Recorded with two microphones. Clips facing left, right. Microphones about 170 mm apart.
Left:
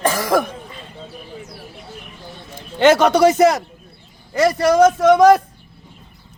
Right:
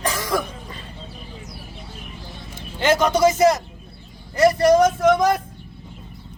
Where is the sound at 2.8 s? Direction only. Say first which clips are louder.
Left 5 dB; 70° left (ahead or behind).